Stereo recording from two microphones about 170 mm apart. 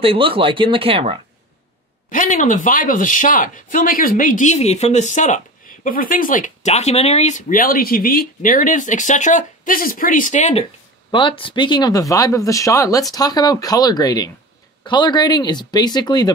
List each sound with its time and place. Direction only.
0.0 s speech: 35° right (ahead or behind)
2.0 s speech: 50° left (ahead or behind)
11.1 s speech: 30° left (ahead or behind)